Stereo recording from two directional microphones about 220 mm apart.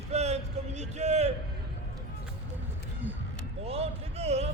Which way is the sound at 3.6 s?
25° right (ahead or behind).